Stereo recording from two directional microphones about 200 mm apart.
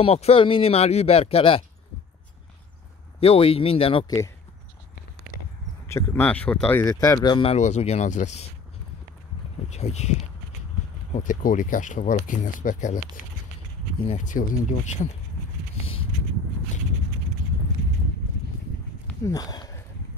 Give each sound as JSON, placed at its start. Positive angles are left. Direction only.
{"t": 0.0, "sound": "speech", "side_deg": 30}
{"t": 3.2, "sound": "speech", "side_deg": 30}
{"t": 5.9, "sound": "speech", "side_deg": 10}
{"t": 7.5, "sound": "speech", "side_deg": 35}
{"t": 9.7, "sound": "speech", "side_deg": 35}
{"t": 14.0, "sound": "speech", "side_deg": 35}
{"t": 19.2, "sound": "speech", "side_deg": 20}